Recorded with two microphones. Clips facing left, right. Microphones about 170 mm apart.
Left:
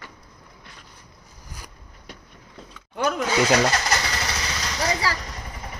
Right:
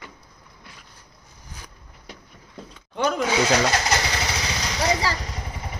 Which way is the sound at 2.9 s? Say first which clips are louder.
Right 1 dB; centre (ahead or behind).